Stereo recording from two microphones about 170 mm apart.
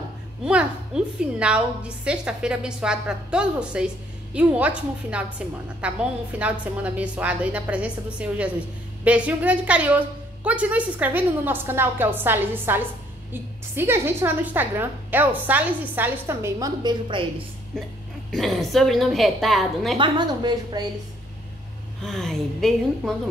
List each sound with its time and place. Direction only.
0.5 s a woman's voice: 5° right (ahead or behind); by 17.3 s 25° right (ahead or behind)
17.7 s a woman's voice: centre (ahead or behind)
20.0 s a woman's voice: 25° right (ahead or behind)
22.0 s a woman's voice: 5° left (ahead or behind)